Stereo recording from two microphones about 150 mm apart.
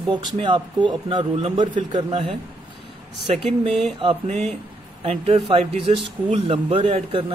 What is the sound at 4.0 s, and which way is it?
A man's voice, 40° right (ahead or behind).